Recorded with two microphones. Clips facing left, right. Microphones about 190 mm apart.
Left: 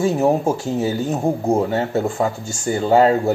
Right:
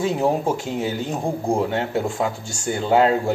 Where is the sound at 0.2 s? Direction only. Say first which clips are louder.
Left 3 dB; 25° left (ahead or behind).